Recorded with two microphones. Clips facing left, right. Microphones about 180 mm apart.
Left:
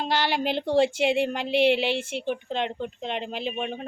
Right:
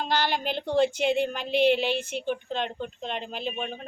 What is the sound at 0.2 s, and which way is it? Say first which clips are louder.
Speech: left 2 dB; 75° left (ahead or behind).